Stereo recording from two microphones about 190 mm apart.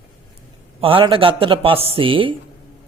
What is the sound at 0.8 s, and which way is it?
A man's voice, 30° right (ahead or behind).